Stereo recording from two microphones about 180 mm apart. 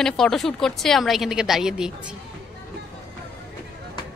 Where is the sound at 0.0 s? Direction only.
Centre (ahead or behind).